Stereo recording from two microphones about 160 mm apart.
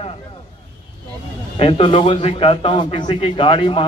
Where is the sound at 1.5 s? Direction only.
35° left (ahead or behind).